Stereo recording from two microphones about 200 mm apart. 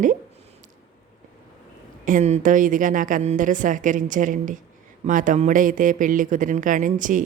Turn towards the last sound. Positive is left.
turn(degrees=-40)  # may be behind; listen again after turning